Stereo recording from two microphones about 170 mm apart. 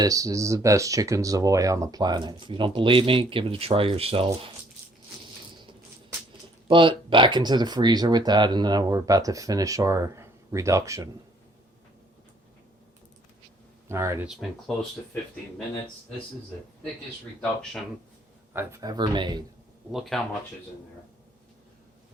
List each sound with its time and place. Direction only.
0.0 s speech: 20° right (ahead or behind)
6.7 s speech: 30° right (ahead or behind)
13.8 s speech: 15° right (ahead or behind)
18.5 s speech: 15° right (ahead or behind)
19.9 s speech: centre (ahead or behind)